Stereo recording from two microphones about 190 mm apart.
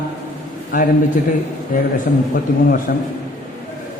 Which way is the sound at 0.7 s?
45° left (ahead or behind).